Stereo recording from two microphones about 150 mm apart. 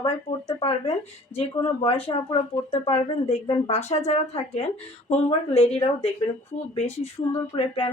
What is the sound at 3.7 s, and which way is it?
A woman's voice, 50° left (ahead or behind).